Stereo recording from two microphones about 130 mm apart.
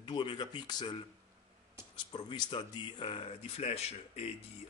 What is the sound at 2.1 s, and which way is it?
Speech, 35° left (ahead or behind).